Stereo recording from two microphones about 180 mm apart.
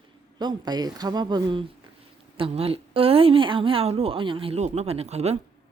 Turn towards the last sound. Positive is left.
turn(degrees=-35)  # may be behind; listen again after turning